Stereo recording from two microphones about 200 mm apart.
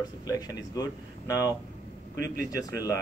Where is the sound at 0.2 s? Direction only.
20° left (ahead or behind).